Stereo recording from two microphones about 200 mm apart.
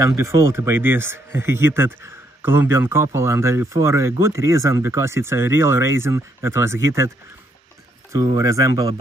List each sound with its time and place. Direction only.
0.0 s speech: 15° right (ahead or behind)
8.1 s speech: 15° right (ahead or behind)